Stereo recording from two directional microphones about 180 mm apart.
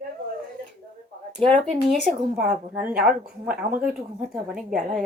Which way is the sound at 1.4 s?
5° left (ahead or behind).